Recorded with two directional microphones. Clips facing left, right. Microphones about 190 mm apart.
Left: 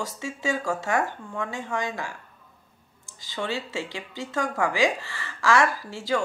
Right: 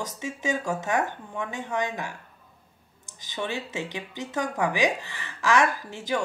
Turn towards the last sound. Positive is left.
turn(degrees=-20)  # may be behind; listen again after turning